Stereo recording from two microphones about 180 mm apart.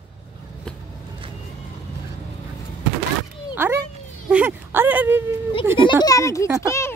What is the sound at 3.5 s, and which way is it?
A child's voice, 15° right (ahead or behind).